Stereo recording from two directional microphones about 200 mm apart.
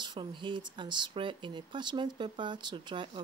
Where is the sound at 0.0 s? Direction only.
20° right (ahead or behind).